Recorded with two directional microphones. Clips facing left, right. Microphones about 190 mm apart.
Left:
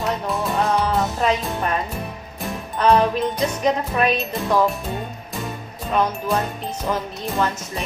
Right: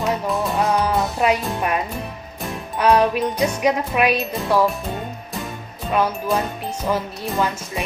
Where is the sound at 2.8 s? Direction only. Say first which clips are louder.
Even; 10° right (ahead or behind).